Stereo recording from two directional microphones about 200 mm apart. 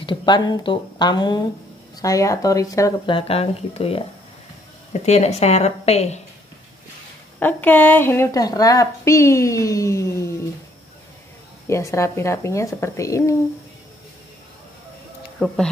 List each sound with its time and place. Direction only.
0.0 s a woman's voice: 25° left (ahead or behind)
7.3 s a woman's voice: 10° left (ahead or behind)
11.6 s a woman's voice: 15° left (ahead or behind)
15.3 s speech: 5° left (ahead or behind)